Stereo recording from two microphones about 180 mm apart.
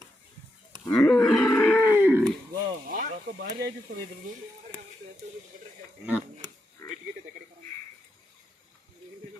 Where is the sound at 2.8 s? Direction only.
50° right (ahead or behind).